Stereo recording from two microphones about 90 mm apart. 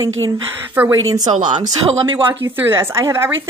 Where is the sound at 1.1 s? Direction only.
50° right (ahead or behind).